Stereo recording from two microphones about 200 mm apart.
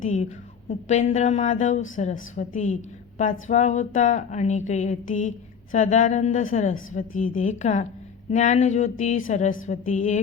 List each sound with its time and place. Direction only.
0.0 s a woman's voice: 40° left (ahead or behind)